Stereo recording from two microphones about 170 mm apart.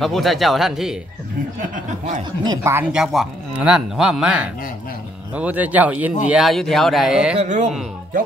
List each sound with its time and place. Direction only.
0.0 s speech: centre (ahead or behind)
2.4 s speech: 20° right (ahead or behind)
2.9 s speech: centre (ahead or behind)
7.3 s speech: 45° right (ahead or behind)